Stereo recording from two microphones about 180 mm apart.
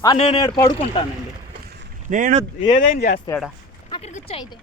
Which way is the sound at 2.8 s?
55° left (ahead or behind).